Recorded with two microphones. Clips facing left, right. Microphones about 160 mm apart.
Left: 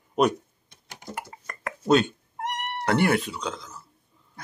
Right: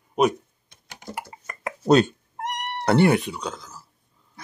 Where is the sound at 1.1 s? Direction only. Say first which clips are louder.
Right 1 dB; 10° right (ahead or behind).